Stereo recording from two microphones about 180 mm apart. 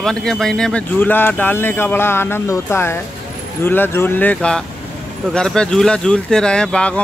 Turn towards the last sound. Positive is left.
turn(degrees=5)  # may be behind; listen again after turning